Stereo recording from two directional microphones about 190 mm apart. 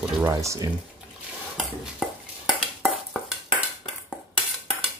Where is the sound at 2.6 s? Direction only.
5° right (ahead or behind).